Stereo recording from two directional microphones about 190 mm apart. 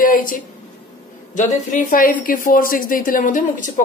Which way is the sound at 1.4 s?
40° left (ahead or behind).